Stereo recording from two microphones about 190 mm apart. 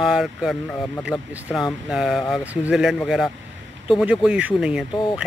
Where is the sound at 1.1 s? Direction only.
20° left (ahead or behind).